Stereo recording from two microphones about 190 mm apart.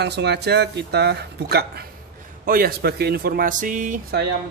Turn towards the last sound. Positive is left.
turn(degrees=-50)  # may be behind; listen again after turning